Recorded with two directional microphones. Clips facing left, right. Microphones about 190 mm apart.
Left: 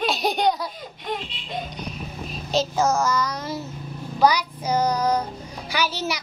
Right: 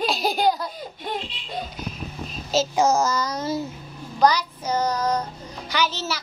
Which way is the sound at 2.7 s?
20° right (ahead or behind).